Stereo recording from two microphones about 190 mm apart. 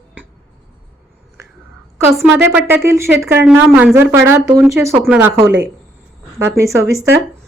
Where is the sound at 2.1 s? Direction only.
Centre (ahead or behind).